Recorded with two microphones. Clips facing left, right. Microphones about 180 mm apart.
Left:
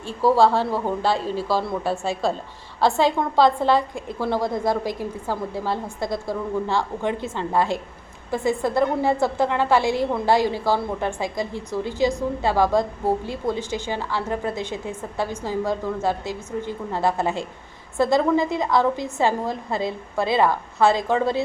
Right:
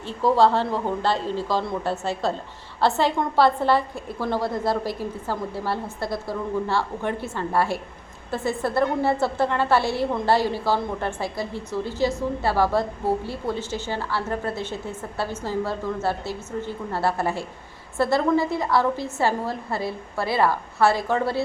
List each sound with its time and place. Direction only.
0.0 s a woman's voice: 10° left (ahead or behind)